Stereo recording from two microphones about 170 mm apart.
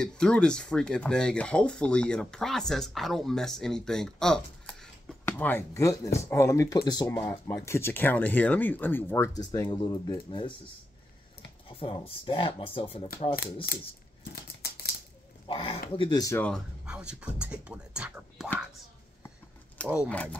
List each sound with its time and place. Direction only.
0.0 s speech: 5° left (ahead or behind); by 10.4 s 30° left (ahead or behind)
11.7 s speech: 35° left (ahead or behind)
14.3 s scissors: 65° left (ahead or behind)
15.4 s speech: 30° left (ahead or behind)
16.3 s speech: 5° left (ahead or behind)
16.8 s speech: 5° right (ahead or behind)
19.8 s speech: 5° left (ahead or behind)